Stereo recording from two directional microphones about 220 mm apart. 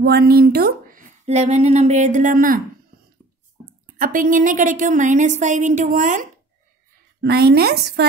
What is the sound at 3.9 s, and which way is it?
Speech, 40° right (ahead or behind).